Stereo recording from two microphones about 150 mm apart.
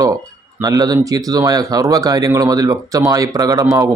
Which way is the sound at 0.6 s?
25° right (ahead or behind).